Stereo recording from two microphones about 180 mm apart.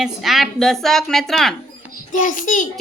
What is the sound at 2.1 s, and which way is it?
Speech, 45° left (ahead or behind).